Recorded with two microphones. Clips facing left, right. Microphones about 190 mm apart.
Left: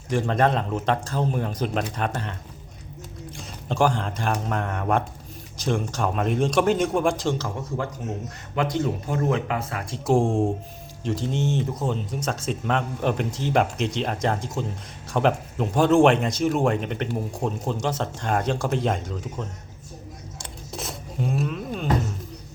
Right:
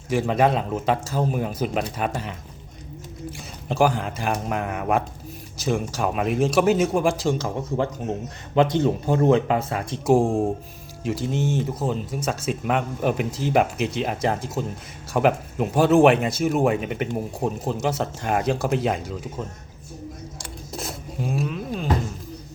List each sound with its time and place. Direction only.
0.1 s speech: 5° right (ahead or behind)
3.3 s speech: 5° right (ahead or behind)
7.3 s speech: 20° right (ahead or behind)
10.1 s speech: centre (ahead or behind)
20.7 s rub: centre (ahead or behind)